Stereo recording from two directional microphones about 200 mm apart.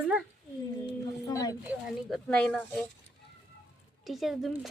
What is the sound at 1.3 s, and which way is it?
Speech, 15° left (ahead or behind).